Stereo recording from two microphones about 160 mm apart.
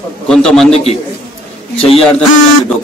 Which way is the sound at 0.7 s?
40° left (ahead or behind).